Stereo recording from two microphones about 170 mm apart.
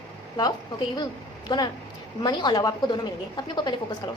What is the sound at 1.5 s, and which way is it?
A woman's voice, 25° left (ahead or behind).